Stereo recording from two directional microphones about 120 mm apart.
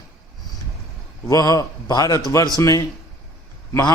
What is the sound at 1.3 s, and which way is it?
A man's voice, 30° left (ahead or behind).